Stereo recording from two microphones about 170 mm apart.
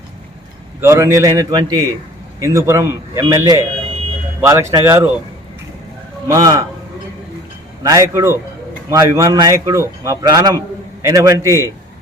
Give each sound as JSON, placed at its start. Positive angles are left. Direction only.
{"t": 0.8, "sound": "a man's voice", "side_deg": -15}
{"t": 4.7, "sound": "a man's voice", "side_deg": -15}
{"t": 6.2, "sound": "a man's voice", "side_deg": -20}
{"t": 7.9, "sound": "a man's voice", "side_deg": -20}